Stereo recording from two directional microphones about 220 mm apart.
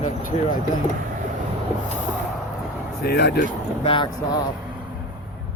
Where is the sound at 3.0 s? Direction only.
45° left (ahead or behind).